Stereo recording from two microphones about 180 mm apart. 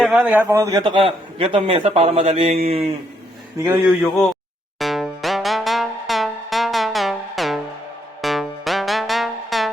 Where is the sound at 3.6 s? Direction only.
15° right (ahead or behind).